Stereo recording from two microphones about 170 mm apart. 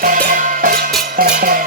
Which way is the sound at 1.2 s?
60° right (ahead or behind).